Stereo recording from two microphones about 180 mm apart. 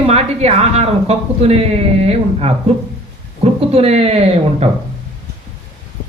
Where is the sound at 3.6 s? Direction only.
35° right (ahead or behind).